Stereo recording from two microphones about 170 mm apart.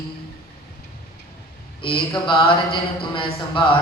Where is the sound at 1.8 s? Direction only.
30° left (ahead or behind).